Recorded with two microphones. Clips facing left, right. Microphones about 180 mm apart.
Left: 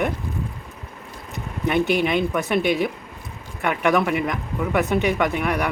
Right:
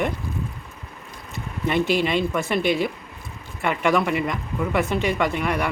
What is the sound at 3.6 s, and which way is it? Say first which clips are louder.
Speech: left 1 dB; centre (ahead or behind).